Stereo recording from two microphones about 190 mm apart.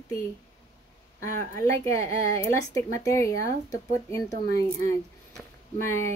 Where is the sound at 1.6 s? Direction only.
15° left (ahead or behind).